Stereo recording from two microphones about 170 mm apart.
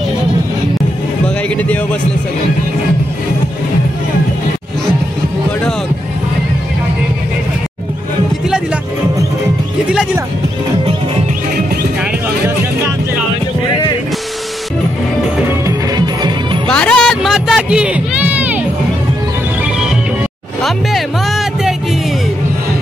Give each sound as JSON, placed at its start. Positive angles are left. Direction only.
{"t": 1.2, "sound": "music", "side_deg": 10}
{"t": 15.6, "sound": "music", "side_deg": -25}
{"t": 16.6, "sound": "music", "side_deg": 5}